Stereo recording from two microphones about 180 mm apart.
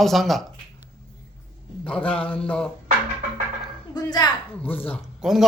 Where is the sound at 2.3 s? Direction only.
5° left (ahead or behind).